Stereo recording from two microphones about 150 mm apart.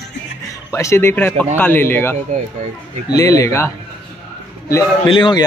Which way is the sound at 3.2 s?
20° left (ahead or behind).